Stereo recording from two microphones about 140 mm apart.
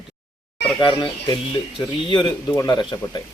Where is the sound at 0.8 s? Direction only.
35° left (ahead or behind).